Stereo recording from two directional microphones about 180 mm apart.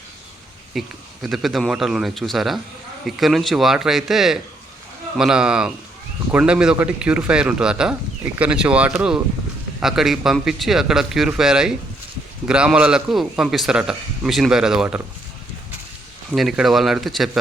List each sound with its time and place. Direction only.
0.7 s speech: centre (ahead or behind)
16.3 s speech: centre (ahead or behind)